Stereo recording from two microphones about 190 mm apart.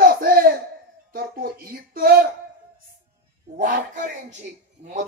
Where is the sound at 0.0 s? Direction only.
50° right (ahead or behind).